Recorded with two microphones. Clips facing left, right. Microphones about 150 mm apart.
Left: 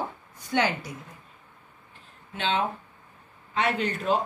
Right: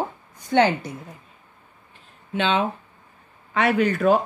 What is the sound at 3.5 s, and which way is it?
Speech, 75° right (ahead or behind).